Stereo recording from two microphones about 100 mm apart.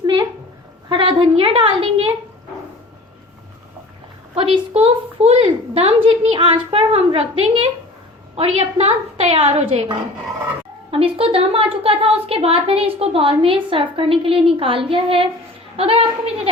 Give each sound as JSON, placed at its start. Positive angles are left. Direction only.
{"t": 0.0, "sound": "a sound", "side_deg": -45}
{"t": 0.9, "sound": "a woman's voice", "side_deg": -55}
{"t": 4.4, "sound": "a woman's voice", "side_deg": -70}
{"t": 8.4, "sound": "a woman's voice", "side_deg": -85}
{"t": 15.7, "sound": "a woman's voice", "side_deg": -75}